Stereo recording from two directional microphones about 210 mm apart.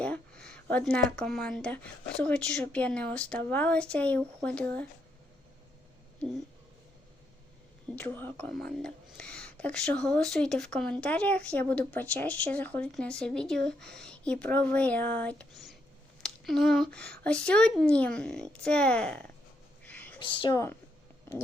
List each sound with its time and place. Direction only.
0.0 s speech: 5° left (ahead or behind)
7.9 s speech: 10° left (ahead or behind)
19.8 s a sound: 10° left (ahead or behind)
20.1 s speech: 25° left (ahead or behind)